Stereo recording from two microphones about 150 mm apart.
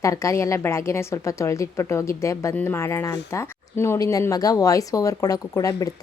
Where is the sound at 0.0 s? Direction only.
20° left (ahead or behind).